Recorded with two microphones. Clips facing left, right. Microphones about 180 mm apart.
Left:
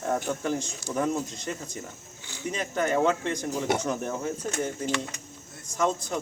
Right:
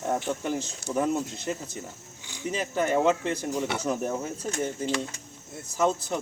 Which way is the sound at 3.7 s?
40° left (ahead or behind).